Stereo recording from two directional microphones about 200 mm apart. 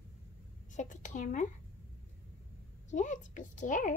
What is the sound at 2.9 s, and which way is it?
A child's voice, 40° left (ahead or behind).